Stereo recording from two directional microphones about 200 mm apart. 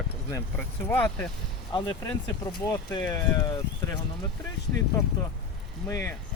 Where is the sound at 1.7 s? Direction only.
20° left (ahead or behind).